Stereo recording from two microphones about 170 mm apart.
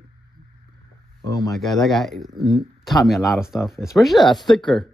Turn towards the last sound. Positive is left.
turn(degrees=0)  # may be behind; listen again after turning